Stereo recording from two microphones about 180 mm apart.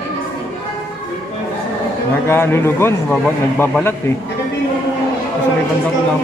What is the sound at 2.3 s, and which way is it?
A man's voice, 15° left (ahead or behind).